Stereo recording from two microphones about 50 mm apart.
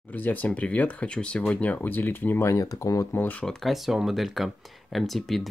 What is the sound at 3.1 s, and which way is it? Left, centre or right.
Speech, left.